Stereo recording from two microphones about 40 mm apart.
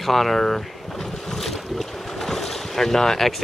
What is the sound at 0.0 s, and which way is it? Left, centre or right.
Speech, centre.